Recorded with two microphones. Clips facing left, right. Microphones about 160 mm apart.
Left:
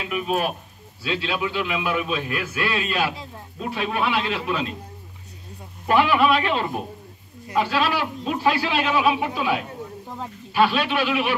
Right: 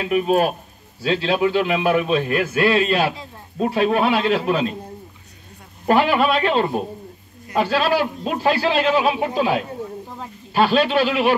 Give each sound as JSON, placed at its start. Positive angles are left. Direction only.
{"t": 0.0, "sound": "a man's voice", "side_deg": -40}
{"t": 5.9, "sound": "speech", "side_deg": -40}